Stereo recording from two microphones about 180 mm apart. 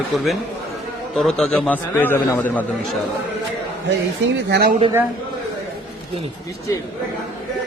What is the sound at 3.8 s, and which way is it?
Speech, 80° right.